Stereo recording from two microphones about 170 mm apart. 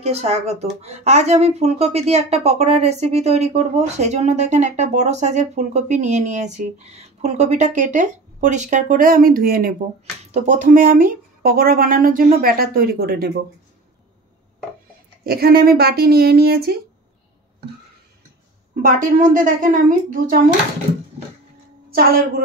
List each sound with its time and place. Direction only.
0.0 s speech: 40° right (ahead or behind); by 9.8 s 55° right (ahead or behind)
10.3 s a woman's voice: 45° right (ahead or behind); by 13.3 s 65° right (ahead or behind)
15.2 s speech: 65° right (ahead or behind)
18.9 s a woman's voice: 50° right (ahead or behind)